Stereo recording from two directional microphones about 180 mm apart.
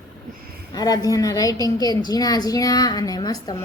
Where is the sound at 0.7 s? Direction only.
20° left (ahead or behind).